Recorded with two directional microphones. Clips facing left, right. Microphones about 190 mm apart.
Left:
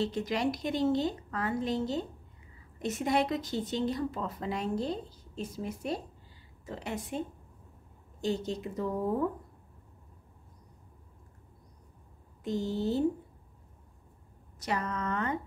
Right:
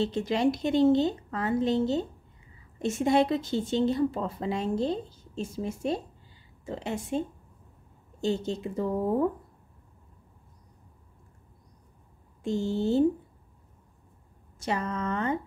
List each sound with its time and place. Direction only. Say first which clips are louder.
0.0 s a woman's voice: right 5 dB; 25° right (ahead or behind)
12.4 s a woman's voice: right 4 dB; 25° right (ahead or behind)
14.6 s a woman's voice: right 3 dB; 25° right (ahead or behind)